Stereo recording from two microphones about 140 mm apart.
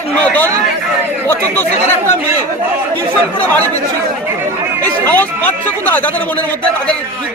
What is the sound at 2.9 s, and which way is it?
Speech, 10° left (ahead or behind).